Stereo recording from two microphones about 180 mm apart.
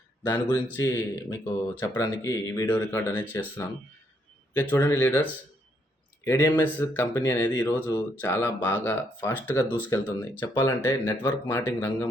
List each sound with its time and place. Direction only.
0.2 s speech: 10° left (ahead or behind)
0.4 s speech: 25° left (ahead or behind)
4.7 s speech: 15° left (ahead or behind)